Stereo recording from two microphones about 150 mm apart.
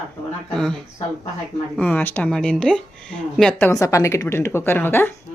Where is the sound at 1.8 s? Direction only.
10° left (ahead or behind).